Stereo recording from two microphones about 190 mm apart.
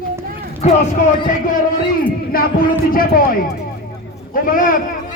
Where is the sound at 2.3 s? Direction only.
50° left (ahead or behind).